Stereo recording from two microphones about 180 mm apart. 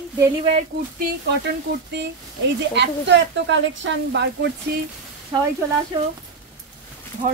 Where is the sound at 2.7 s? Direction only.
75° right (ahead or behind).